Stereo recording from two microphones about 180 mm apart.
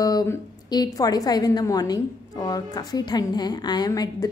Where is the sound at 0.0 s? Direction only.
20° left (ahead or behind).